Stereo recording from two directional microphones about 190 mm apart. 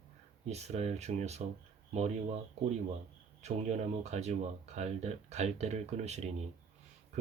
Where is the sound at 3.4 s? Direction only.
35° right (ahead or behind).